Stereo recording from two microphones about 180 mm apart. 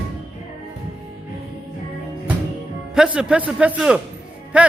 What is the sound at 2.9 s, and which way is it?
A man's voice, 5° right (ahead or behind).